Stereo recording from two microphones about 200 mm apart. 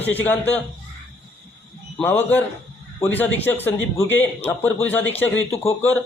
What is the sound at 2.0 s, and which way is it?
A man's voice, 10° left (ahead or behind).